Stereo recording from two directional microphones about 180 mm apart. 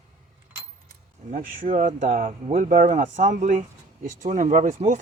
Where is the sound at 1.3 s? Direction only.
45° right (ahead or behind).